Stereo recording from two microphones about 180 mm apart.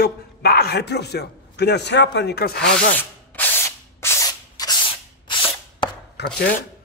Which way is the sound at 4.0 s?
15° left (ahead or behind).